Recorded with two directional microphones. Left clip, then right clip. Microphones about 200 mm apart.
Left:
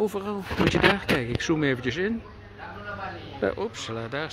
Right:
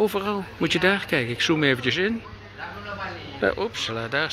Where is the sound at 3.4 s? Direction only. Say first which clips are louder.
Right 4 dB; 10° left (ahead or behind).